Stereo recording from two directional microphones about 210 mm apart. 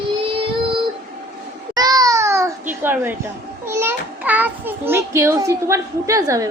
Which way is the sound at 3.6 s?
10° right (ahead or behind).